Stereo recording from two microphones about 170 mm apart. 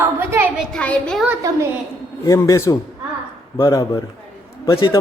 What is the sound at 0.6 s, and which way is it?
Speech, 5° left (ahead or behind).